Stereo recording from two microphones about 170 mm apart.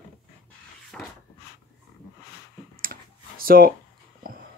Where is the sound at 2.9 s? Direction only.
65° right (ahead or behind).